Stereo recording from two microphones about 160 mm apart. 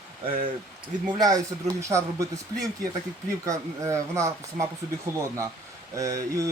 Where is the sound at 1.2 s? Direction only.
25° right (ahead or behind).